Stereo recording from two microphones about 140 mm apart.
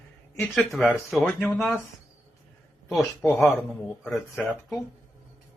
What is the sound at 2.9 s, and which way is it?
Speech, centre (ahead or behind).